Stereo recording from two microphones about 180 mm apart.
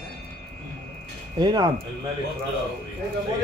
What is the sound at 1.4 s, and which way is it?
Speech, 25° right (ahead or behind).